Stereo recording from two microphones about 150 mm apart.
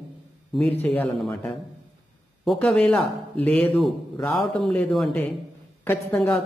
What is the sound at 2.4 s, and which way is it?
Speech, centre (ahead or behind).